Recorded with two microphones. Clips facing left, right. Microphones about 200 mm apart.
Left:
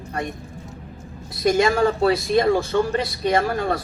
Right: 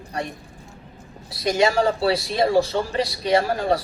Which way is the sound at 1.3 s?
45° left (ahead or behind).